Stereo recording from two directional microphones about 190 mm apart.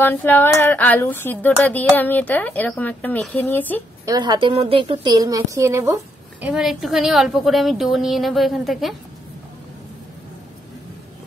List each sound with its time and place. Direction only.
0.0 s speech: 10° left (ahead or behind)
4.0 s a woman's voice: 20° right (ahead or behind)
6.4 s a woman's voice: centre (ahead or behind)